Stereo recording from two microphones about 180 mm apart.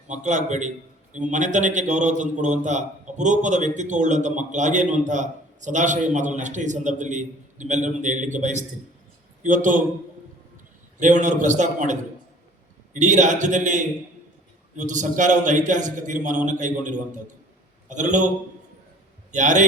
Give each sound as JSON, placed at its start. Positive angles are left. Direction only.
{"t": 0.1, "sound": "a man's voice", "side_deg": -40}
{"t": 11.0, "sound": "a man's voice", "side_deg": -45}
{"t": 19.3, "sound": "a man's voice", "side_deg": -45}